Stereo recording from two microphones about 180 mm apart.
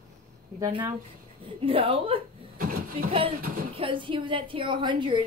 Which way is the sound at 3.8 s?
30° right (ahead or behind).